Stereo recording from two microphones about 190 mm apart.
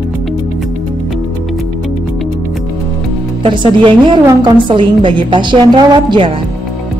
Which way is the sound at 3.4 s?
25° right (ahead or behind).